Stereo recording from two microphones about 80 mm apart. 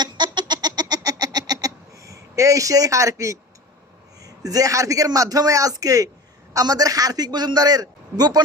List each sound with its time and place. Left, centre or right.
0.0 s chicken: right
4.2 s a man's voice: right